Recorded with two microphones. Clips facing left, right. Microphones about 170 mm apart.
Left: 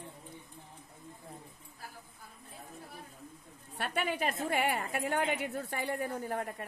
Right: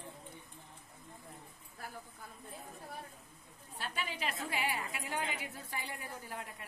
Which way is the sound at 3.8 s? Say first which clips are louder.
Left 7 dB; 65° left (ahead or behind).